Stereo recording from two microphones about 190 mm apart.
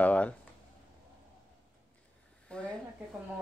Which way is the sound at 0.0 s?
5° left (ahead or behind).